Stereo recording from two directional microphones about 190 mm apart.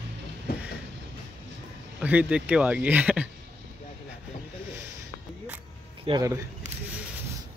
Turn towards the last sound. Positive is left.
turn(degrees=-20)  # may be behind; listen again after turning